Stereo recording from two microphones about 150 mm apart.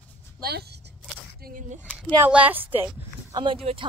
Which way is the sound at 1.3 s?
80° right.